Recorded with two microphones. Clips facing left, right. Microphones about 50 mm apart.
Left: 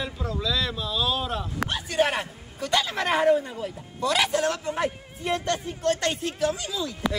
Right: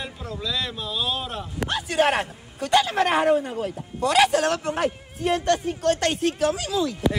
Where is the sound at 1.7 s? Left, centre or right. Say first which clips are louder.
Right 4 dB; right.